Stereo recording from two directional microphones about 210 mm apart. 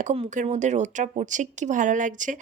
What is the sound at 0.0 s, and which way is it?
Speech, 35° right (ahead or behind).